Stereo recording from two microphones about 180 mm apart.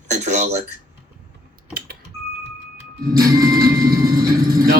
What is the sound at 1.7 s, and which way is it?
Typing, 55° right (ahead or behind).